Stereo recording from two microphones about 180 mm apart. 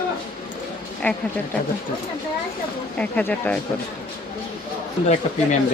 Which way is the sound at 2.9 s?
5° left (ahead or behind).